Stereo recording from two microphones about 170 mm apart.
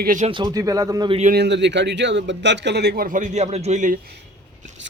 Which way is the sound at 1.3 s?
85° right.